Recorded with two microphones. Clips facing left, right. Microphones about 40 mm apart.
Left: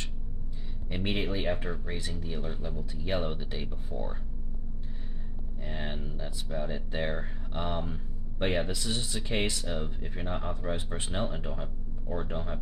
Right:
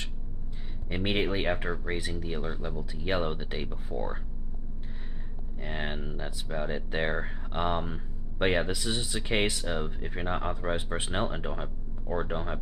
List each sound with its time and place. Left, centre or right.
0.9 s speech: right
5.6 s speech: right
9.5 s speech: centre